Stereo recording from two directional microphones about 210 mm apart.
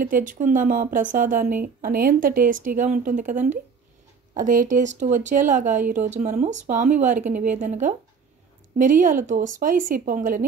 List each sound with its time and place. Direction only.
0.0 s speech: 40° right (ahead or behind)